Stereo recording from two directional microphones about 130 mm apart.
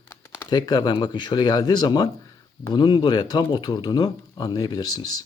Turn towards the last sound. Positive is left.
turn(degrees=30)  # may be behind; listen again after turning